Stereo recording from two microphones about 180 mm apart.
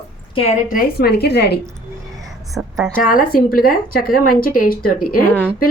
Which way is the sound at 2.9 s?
50° left (ahead or behind).